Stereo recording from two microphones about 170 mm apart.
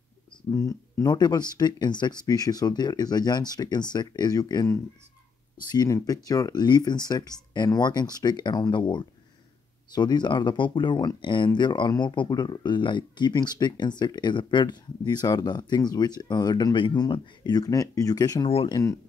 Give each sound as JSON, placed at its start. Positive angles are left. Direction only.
{"t": 0.5, "sound": "speech", "side_deg": 20}
{"t": 18.5, "sound": "speech", "side_deg": 35}